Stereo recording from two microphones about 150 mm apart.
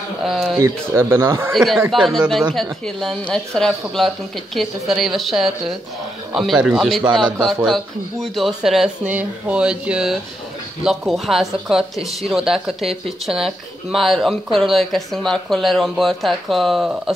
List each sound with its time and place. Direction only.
0.2 s speech: centre (ahead or behind)
0.6 s speech: 15° right (ahead or behind)
1.5 s speech: centre (ahead or behind)